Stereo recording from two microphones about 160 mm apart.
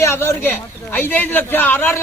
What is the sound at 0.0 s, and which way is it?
A man's voice, 15° left (ahead or behind).